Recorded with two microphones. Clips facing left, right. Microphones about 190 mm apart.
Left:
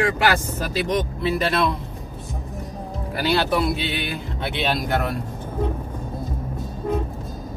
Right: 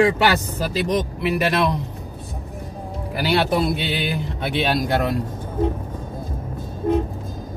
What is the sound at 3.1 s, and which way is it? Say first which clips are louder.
Speech: right 1 dB; 15° right (ahead or behind).